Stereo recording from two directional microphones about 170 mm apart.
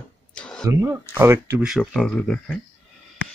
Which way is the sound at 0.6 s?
15° right (ahead or behind).